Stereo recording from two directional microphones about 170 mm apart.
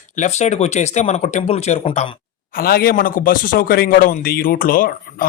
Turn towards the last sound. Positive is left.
turn(degrees=55)  # may be behind; listen again after turning